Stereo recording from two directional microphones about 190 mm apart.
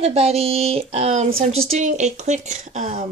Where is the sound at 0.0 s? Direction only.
35° right (ahead or behind).